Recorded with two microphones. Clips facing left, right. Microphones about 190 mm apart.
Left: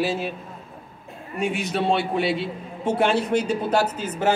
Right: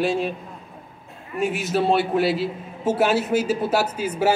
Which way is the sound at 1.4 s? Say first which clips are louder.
Right 2 dB; 5° right (ahead or behind).